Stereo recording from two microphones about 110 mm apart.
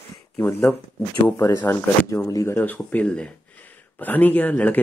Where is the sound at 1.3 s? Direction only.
30° left (ahead or behind).